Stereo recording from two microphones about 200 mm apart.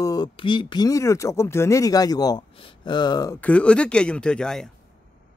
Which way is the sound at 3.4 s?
5° left (ahead or behind).